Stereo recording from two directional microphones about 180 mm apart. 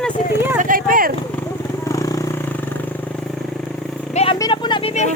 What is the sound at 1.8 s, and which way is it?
Vehicle, 20° left (ahead or behind).